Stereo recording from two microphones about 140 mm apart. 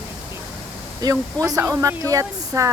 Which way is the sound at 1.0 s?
25° right (ahead or behind).